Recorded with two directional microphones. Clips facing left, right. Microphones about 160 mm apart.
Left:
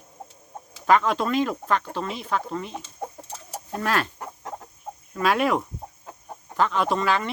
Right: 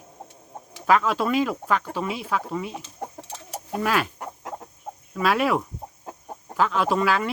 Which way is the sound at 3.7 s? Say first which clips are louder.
Right 1 dB; 5° right (ahead or behind).